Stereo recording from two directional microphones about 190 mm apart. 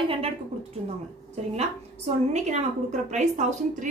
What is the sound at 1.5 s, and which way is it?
A woman's voice, 35° right (ahead or behind).